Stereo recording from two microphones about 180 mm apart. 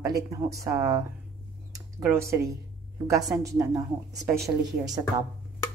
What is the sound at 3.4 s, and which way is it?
Speech, 20° right (ahead or behind).